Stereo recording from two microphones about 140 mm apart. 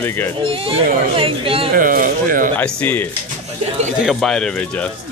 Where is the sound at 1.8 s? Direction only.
80° right.